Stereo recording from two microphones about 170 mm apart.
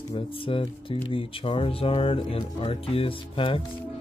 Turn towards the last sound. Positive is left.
turn(degrees=30)  # may be behind; listen again after turning